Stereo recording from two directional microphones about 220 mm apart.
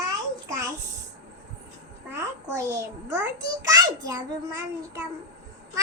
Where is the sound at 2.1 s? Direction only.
15° right (ahead or behind).